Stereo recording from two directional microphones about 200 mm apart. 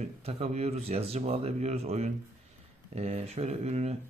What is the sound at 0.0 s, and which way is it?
Speech, 30° right (ahead or behind).